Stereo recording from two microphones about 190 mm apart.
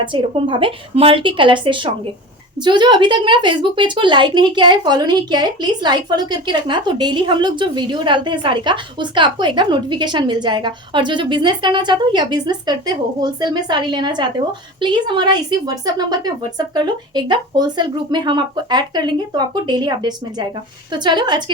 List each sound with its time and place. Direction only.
0.0 s speech: 25° right (ahead or behind)